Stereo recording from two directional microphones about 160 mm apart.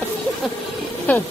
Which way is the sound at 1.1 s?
10° left (ahead or behind).